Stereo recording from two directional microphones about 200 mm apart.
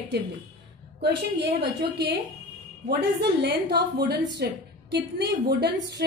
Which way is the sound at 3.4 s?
55° right (ahead or behind).